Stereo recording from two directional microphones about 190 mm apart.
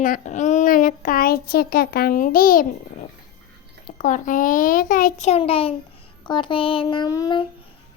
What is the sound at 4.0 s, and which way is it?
Speech, 45° left (ahead or behind).